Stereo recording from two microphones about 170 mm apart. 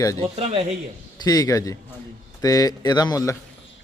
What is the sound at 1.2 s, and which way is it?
A man's voice, 20° left (ahead or behind).